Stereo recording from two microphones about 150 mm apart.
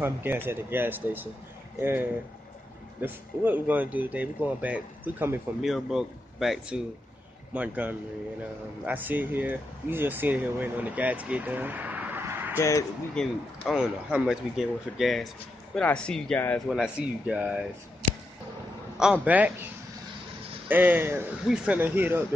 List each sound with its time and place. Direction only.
0.0 s speech: 15° right (ahead or behind)
12.5 s speech: 20° left (ahead or behind)
13.1 s speech: centre (ahead or behind)
16.6 s speech: 5° right (ahead or behind)
19.2 s speech: 10° right (ahead or behind)
20.6 s speech: 10° right (ahead or behind)